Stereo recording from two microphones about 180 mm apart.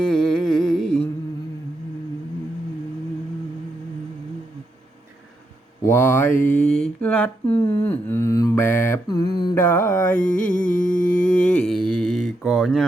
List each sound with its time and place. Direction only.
0.0 s music: 5° left (ahead or behind)
5.8 s mantra: 15° left (ahead or behind)
6.4 s speech: 5° left (ahead or behind)
7.0 s mantra: 10° left (ahead or behind)
10.2 s a sound: 50° left (ahead or behind)
11.4 s speech: 5° left (ahead or behind)